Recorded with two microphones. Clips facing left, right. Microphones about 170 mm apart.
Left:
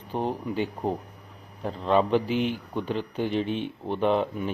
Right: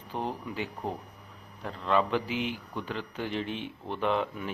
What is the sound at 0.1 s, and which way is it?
Speech, 15° left (ahead or behind).